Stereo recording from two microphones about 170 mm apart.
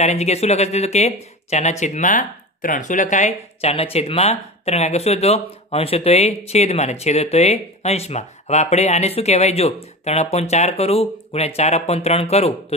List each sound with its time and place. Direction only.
0.0 s speech: 40° left (ahead or behind)